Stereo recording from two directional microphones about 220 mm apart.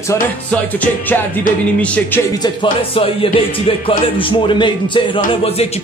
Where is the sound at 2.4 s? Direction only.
25° left (ahead or behind).